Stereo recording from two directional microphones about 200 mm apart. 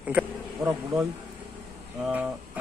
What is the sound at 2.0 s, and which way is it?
Speech, 10° right (ahead or behind).